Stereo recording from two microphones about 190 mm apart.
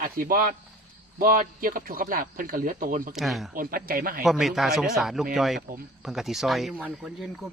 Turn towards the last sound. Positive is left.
turn(degrees=-5)  # may be behind; listen again after turning